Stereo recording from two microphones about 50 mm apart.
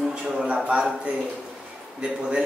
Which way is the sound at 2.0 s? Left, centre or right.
Centre.